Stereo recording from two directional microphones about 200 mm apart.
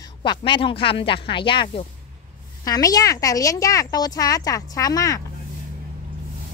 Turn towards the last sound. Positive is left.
turn(degrees=15)  # may be behind; listen again after turning